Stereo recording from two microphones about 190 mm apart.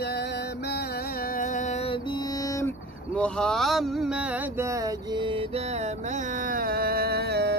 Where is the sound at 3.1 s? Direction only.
5° left (ahead or behind).